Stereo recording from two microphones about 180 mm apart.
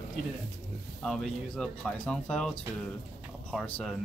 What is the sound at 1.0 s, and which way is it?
Speech, 5° left (ahead or behind).